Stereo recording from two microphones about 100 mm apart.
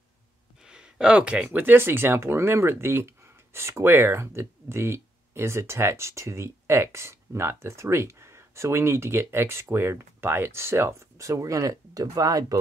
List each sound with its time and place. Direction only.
0.7 s speech: 10° right (ahead or behind); by 12.5 s 35° right (ahead or behind)